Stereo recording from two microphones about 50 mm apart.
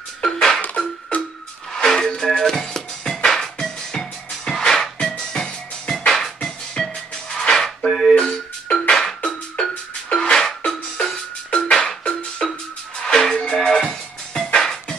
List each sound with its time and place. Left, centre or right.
0.2 s a sound: centre
1.7 s music: centre
10.1 s music: centre